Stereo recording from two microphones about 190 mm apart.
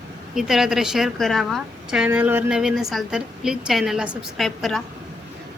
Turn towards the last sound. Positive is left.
turn(degrees=0)  # may be behind; listen again after turning